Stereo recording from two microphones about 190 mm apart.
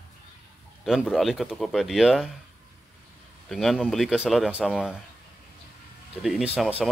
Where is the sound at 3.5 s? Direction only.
Centre (ahead or behind).